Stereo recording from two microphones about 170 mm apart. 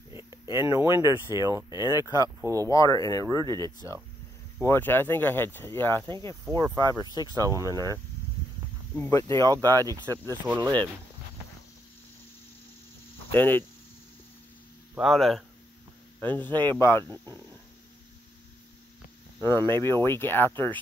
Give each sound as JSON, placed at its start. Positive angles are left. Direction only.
{"t": 0.1, "sound": "speech", "side_deg": -15}
{"t": 2.7, "sound": "speech", "side_deg": 20}
{"t": 3.3, "sound": "speech", "side_deg": -25}
{"t": 4.6, "sound": "speech", "side_deg": 15}
{"t": 6.0, "sound": "speech", "side_deg": -30}
{"t": 8.9, "sound": "speech", "side_deg": 15}
{"t": 9.4, "sound": "speech", "side_deg": -20}
{"t": 10.6, "sound": "speech", "side_deg": -25}
{"t": 13.3, "sound": "speech", "side_deg": 10}
{"t": 15.0, "sound": "speech", "side_deg": 0}
{"t": 16.2, "sound": "speech", "side_deg": 10}
{"t": 17.1, "sound": "speech", "side_deg": -20}
{"t": 19.4, "sound": "speech", "side_deg": 15}